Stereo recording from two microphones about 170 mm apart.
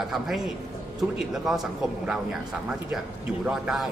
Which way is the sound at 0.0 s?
Centre (ahead or behind).